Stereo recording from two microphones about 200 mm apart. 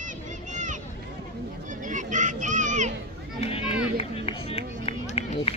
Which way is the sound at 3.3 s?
30° left (ahead or behind).